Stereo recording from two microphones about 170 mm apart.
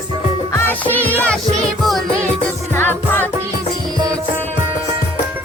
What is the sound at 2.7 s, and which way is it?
Music, 15° left (ahead or behind).